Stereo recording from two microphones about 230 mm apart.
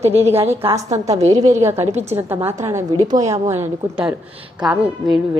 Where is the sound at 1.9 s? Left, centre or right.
Right.